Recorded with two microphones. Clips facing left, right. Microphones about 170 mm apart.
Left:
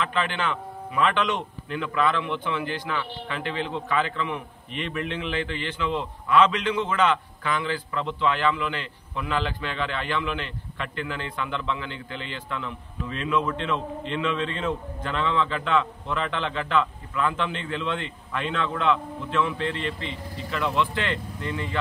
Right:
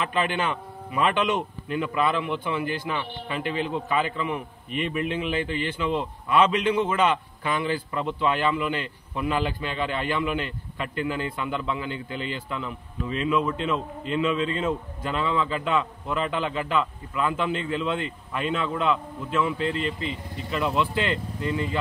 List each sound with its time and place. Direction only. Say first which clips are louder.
0.0 s a man's voice: right 1 dB; 10° right (ahead or behind)
21.4 s speech: right 4 dB; 35° right (ahead or behind)